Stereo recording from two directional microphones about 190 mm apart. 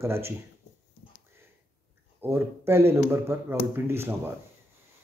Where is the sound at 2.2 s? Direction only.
10° right (ahead or behind).